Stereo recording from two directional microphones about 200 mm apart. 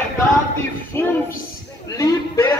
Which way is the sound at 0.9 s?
10° left (ahead or behind).